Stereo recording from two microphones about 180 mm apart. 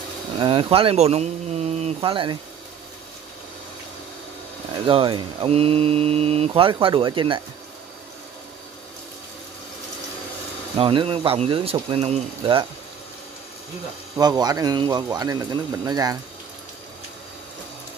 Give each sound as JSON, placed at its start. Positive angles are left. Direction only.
{"t": 0.4, "sound": "speech", "side_deg": -30}
{"t": 4.8, "sound": "speech", "side_deg": -30}
{"t": 10.8, "sound": "speech", "side_deg": -30}
{"t": 14.1, "sound": "a man's voice", "side_deg": -20}